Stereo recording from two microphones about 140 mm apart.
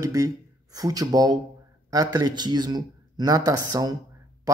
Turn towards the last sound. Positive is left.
turn(degrees=-25)  # may be behind; listen again after turning